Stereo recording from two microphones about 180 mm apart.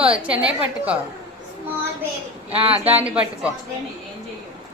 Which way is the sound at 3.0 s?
5° right (ahead or behind).